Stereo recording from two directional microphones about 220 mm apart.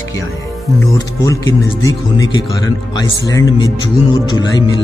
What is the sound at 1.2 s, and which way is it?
Speech, 15° left (ahead or behind).